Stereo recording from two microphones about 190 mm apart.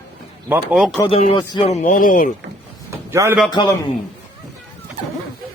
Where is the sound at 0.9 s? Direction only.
30° left (ahead or behind); by 2.3 s 45° left (ahead or behind).